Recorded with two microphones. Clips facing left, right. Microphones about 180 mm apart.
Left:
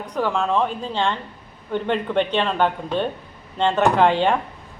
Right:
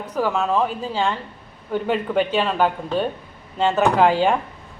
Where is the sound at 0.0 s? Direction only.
5° right (ahead or behind).